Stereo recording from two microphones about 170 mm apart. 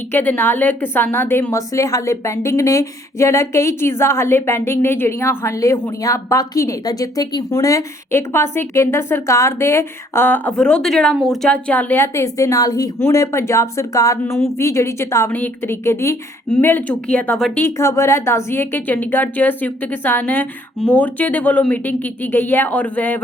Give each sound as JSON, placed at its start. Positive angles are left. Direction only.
{"t": 0.1, "sound": "a woman's voice", "side_deg": 10}
{"t": 17.7, "sound": "a woman's voice", "side_deg": 15}